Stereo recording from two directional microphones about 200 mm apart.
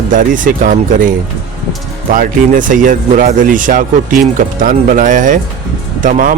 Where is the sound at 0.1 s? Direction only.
40° right (ahead or behind).